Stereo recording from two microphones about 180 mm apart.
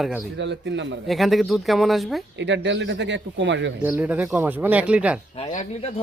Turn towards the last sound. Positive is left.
turn(degrees=35)  # may be behind; listen again after turning